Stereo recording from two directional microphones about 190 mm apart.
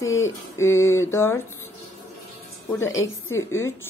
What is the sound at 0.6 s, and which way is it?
Speech, 15° left (ahead or behind).